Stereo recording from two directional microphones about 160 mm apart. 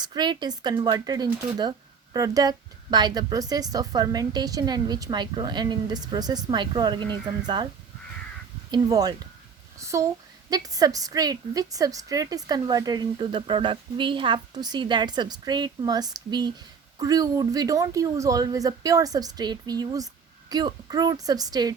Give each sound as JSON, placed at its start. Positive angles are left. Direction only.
{"t": 0.0, "sound": "a woman's voice", "side_deg": -25}
{"t": 8.7, "sound": "a woman's voice", "side_deg": -25}